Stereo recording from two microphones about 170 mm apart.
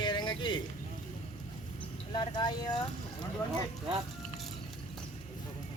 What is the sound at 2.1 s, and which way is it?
Speech, 25° left (ahead or behind).